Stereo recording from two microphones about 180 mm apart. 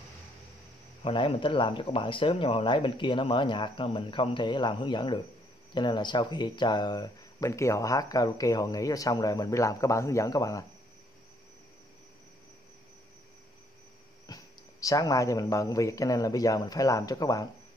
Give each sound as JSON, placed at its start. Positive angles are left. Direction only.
{"t": 1.0, "sound": "speech", "side_deg": 30}
{"t": 14.2, "sound": "speech", "side_deg": 20}